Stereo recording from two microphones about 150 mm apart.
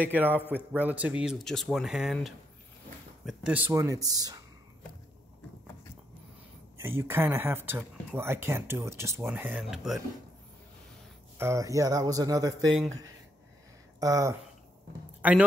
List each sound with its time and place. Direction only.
0.0 s speech: 10° right (ahead or behind)
3.3 s speech: 10° right (ahead or behind)
3.7 s speech: 20° right (ahead or behind)
6.8 s speech: 15° right (ahead or behind)
11.3 s speech: 20° right (ahead or behind)
13.9 s speech: 25° right (ahead or behind)
15.2 s speech: 10° right (ahead or behind)